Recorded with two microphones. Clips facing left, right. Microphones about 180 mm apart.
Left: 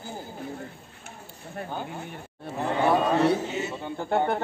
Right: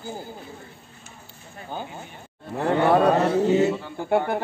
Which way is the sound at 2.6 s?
65° right (ahead or behind).